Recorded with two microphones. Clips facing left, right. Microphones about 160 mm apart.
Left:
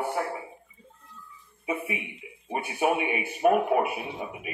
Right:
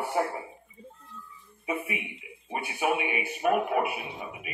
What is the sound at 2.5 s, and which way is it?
A man's voice, 40° left (ahead or behind).